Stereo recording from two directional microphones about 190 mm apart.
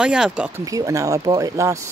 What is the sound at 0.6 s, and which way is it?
Speech, 20° right (ahead or behind).